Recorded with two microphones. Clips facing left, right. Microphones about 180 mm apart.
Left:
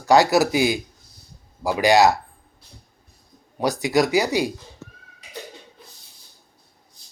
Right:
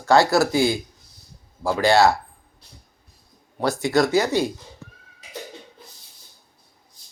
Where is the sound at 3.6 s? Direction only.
15° left (ahead or behind).